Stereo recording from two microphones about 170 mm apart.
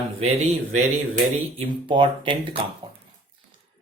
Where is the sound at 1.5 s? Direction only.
30° right (ahead or behind).